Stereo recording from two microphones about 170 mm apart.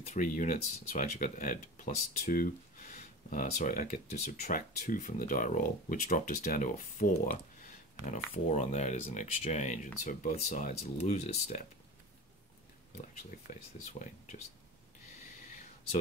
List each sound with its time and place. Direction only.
0.0 s speech: 45° left (ahead or behind)
13.5 s speech: 50° left (ahead or behind)